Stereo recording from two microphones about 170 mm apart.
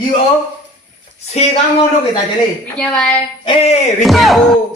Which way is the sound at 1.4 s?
40° left (ahead or behind).